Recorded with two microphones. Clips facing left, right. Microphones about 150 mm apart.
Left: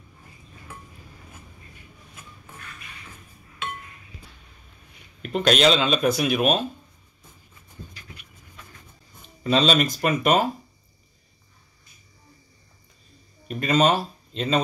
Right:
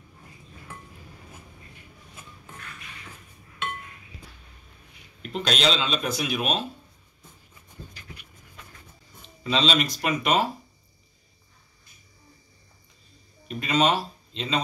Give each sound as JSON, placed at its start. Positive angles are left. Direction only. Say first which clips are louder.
{"t": 5.3, "sound": "speech", "louder": "left 6 dB", "side_deg": 55}
{"t": 9.4, "sound": "speech", "louder": "left 4 dB", "side_deg": 45}
{"t": 13.5, "sound": "speech", "louder": "left 3 dB", "side_deg": 45}